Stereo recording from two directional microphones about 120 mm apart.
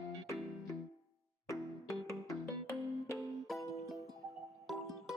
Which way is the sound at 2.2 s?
20° left (ahead or behind).